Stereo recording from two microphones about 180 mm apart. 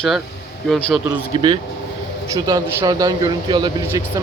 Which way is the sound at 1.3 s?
30° right (ahead or behind).